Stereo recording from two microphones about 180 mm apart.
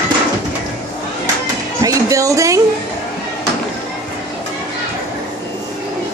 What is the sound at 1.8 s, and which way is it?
Music, 20° right (ahead or behind).